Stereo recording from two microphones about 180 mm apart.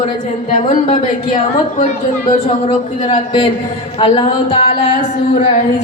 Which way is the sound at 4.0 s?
30° left (ahead or behind).